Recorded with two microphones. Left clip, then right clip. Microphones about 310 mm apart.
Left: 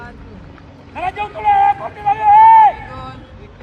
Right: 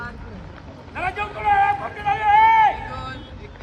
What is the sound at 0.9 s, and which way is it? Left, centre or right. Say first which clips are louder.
Vehicle: left 4 dB; left.